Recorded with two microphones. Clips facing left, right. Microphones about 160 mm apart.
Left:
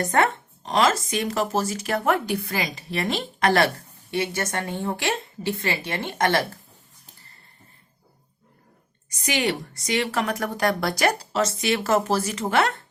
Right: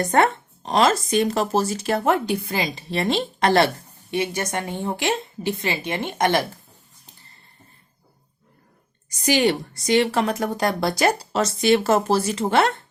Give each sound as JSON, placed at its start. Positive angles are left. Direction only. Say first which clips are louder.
{"t": 0.0, "sound": "speech", "louder": "right 3 dB", "side_deg": -30}
{"t": 4.1, "sound": "a woman's voice", "louder": "right 2 dB", "side_deg": -15}
{"t": 9.0, "sound": "a woman's voice", "louder": "right 6 dB", "side_deg": -35}